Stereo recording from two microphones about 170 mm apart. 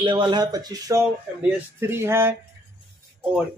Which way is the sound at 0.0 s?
30° right (ahead or behind).